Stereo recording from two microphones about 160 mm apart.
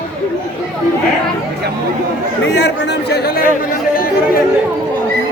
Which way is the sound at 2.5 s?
90° left.